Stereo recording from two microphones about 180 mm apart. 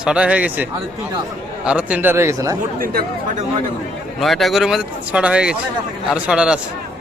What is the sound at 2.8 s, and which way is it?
Speech, 55° right (ahead or behind).